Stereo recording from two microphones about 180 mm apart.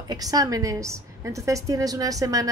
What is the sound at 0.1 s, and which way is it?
A woman's voice, 20° right (ahead or behind).